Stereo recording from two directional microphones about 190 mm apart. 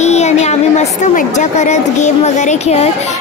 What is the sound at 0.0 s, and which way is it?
A woman's voice, 35° left (ahead or behind).